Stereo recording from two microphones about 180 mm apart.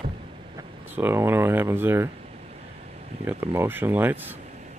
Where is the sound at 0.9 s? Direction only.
10° right (ahead or behind).